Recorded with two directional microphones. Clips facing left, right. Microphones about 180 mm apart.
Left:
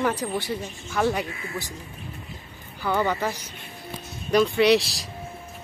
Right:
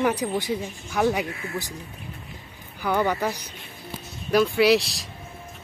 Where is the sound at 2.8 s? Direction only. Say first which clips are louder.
Right 1 dB; 15° right (ahead or behind); by 5.0 s centre (ahead or behind).